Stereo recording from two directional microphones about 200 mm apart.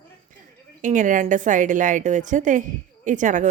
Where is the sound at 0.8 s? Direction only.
40° right (ahead or behind).